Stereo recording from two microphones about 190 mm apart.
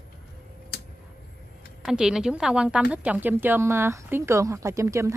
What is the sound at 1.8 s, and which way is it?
A woman's voice, 5° right (ahead or behind).